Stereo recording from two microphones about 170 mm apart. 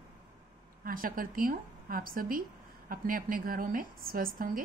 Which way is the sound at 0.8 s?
55° right (ahead or behind).